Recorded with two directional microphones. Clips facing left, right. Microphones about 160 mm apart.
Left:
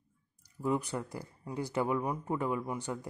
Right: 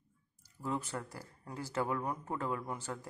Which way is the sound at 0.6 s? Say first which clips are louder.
Left 6 dB; 15° left (ahead or behind).